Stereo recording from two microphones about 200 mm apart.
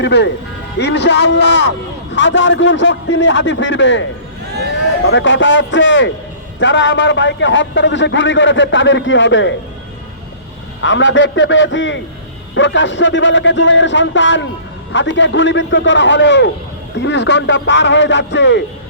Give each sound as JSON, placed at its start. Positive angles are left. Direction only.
{"t": 0.0, "sound": "a man's voice", "side_deg": 60}
{"t": 5.0, "sound": "a man's voice", "side_deg": 65}
{"t": 10.8, "sound": "a man's voice", "side_deg": 65}